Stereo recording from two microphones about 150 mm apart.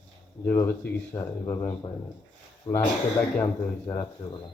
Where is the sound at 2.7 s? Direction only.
35° left (ahead or behind).